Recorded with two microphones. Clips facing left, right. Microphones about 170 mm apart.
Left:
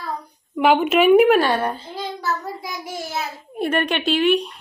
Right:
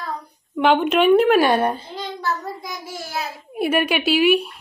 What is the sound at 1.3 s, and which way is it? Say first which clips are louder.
Speech: right 2 dB; 15° right (ahead or behind).